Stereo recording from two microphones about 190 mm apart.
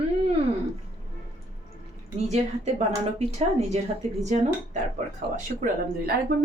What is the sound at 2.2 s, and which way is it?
A woman's voice, 35° right (ahead or behind).